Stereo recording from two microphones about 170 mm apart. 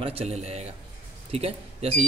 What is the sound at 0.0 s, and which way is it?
Speech, 35° right (ahead or behind).